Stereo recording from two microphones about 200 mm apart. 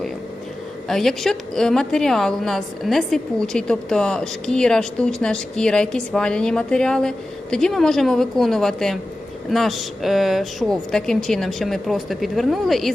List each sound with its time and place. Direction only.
0.9 s a woman's voice: centre (ahead or behind)